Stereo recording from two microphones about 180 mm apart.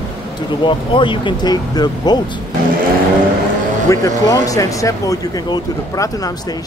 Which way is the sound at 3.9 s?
20° left (ahead or behind).